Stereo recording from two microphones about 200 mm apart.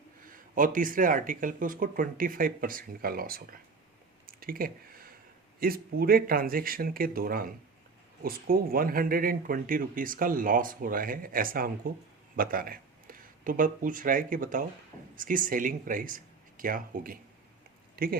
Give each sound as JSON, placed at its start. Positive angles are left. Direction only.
{"t": 0.2, "sound": "speech", "side_deg": -45}
{"t": 4.3, "sound": "a sound", "side_deg": -45}
{"t": 5.5, "sound": "speech", "side_deg": -45}